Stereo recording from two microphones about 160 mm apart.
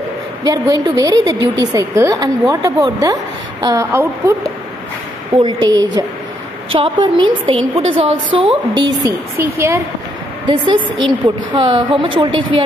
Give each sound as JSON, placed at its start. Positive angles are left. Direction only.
{"t": 0.4, "sound": "a woman's voice", "side_deg": -25}
{"t": 5.3, "sound": "a woman's voice", "side_deg": -30}
{"t": 9.4, "sound": "a woman's voice", "side_deg": -15}
{"t": 10.5, "sound": "a woman's voice", "side_deg": -30}